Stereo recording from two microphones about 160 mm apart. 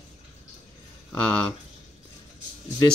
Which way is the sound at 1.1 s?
5° left (ahead or behind).